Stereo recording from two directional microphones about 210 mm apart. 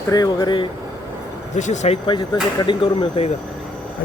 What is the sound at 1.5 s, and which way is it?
Speech, 35° left (ahead or behind).